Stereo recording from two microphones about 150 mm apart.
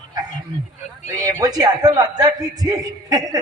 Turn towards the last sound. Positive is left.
turn(degrees=-25)  # may be behind; listen again after turning